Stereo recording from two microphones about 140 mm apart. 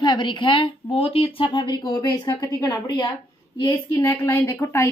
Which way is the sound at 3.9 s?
25° left (ahead or behind).